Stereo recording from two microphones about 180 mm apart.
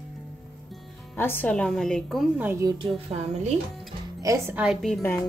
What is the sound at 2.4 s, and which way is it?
Speech, 15° right (ahead or behind).